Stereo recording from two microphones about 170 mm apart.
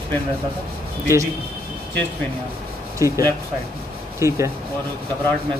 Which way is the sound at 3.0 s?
20° right (ahead or behind).